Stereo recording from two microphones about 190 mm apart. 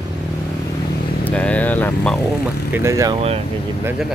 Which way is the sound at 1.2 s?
5° left (ahead or behind).